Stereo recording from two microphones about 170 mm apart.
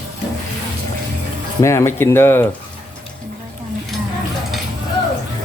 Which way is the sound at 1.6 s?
15° left (ahead or behind).